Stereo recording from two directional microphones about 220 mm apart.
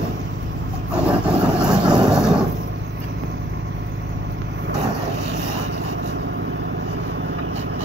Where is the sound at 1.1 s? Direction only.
5° right (ahead or behind).